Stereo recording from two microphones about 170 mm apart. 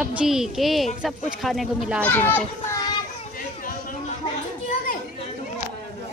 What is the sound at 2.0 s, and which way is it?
Speech, 10° left (ahead or behind).